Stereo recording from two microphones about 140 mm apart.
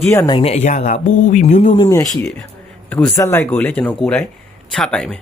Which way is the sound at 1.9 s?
20° left (ahead or behind).